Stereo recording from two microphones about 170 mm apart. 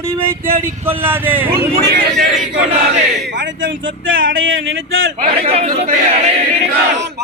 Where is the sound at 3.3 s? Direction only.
90° right.